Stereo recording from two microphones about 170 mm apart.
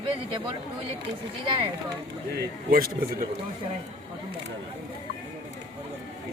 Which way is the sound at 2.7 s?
60° right (ahead or behind).